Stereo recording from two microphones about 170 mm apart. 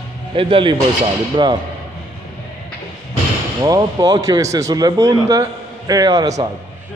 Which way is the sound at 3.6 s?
20° right (ahead or behind).